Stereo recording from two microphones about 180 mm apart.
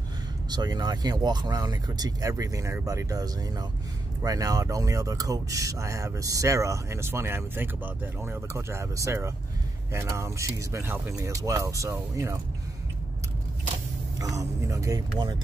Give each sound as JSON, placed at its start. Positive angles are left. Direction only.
{"t": 0.5, "sound": "speech", "side_deg": -20}
{"t": 14.1, "sound": "speech", "side_deg": -20}